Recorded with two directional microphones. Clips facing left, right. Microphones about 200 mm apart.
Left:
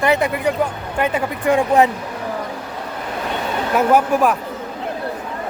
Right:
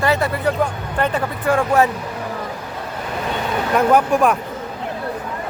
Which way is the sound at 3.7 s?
5° left (ahead or behind).